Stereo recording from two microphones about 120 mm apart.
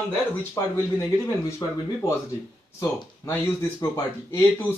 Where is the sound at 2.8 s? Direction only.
20° left (ahead or behind).